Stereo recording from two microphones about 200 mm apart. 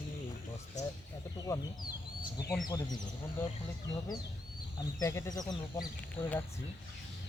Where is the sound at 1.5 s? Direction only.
15° left (ahead or behind).